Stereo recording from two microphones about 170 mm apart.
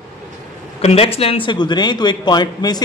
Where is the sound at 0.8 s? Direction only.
35° left (ahead or behind).